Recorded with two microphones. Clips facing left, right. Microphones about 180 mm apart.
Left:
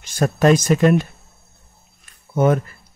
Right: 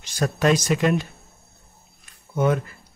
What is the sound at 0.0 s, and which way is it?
Speech, 50° left (ahead or behind).